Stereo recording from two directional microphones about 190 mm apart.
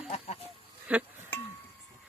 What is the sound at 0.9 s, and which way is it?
Male singing, 10° right (ahead or behind).